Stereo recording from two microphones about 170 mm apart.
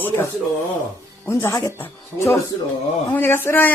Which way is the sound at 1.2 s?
15° left (ahead or behind).